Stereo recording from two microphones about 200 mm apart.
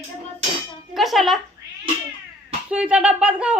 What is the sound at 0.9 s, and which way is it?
Speech, centre (ahead or behind).